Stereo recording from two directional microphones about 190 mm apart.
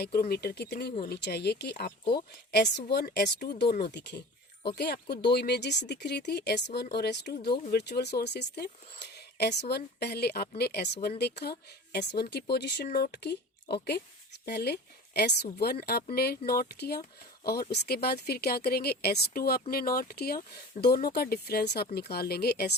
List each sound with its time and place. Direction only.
0.0 s a woman's voice: 55° left (ahead or behind)